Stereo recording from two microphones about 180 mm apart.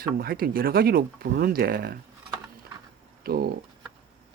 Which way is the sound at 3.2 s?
55° right (ahead or behind).